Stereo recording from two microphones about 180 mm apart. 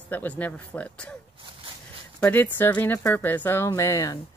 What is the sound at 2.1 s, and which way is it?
A woman's voice, 10° left (ahead or behind).